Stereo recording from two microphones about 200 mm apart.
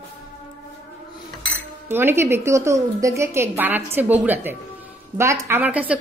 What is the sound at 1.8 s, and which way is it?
A woman's voice, 10° right (ahead or behind).